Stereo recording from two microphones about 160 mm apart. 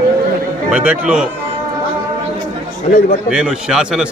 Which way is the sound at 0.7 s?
10° right (ahead or behind).